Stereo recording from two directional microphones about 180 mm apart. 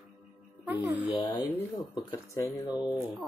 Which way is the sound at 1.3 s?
25° left (ahead or behind).